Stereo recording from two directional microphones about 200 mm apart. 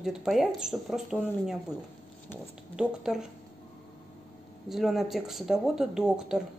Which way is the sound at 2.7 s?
Centre (ahead or behind).